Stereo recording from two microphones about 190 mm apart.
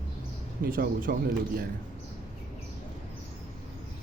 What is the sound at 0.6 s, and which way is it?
Speech, 50° right (ahead or behind).